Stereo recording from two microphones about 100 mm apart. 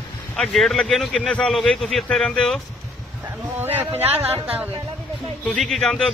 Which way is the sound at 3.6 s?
20° right (ahead or behind).